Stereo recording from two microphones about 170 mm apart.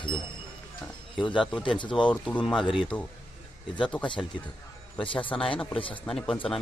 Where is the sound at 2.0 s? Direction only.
10° left (ahead or behind).